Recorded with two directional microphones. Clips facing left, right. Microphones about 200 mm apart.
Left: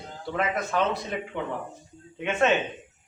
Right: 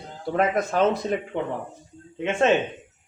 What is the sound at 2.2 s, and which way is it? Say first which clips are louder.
Speech: right 2 dB; 30° right (ahead or behind).